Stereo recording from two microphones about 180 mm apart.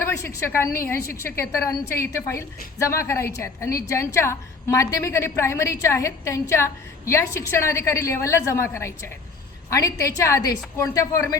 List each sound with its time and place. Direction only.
0.0 s a woman's voice: 15° left (ahead or behind)